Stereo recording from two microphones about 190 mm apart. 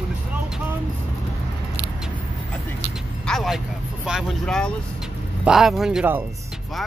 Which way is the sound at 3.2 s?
Centre (ahead or behind).